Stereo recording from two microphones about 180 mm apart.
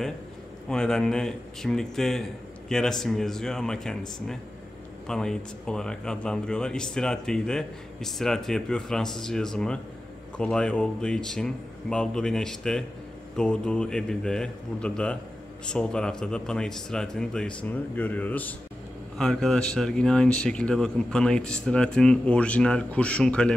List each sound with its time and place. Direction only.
0.7 s speech: 5° left (ahead or behind)